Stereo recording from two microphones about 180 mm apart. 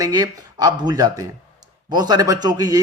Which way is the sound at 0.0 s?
20° right (ahead or behind).